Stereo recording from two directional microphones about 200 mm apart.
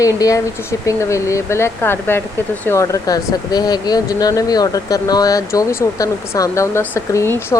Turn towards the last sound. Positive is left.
turn(degrees=15)  # may be behind; listen again after turning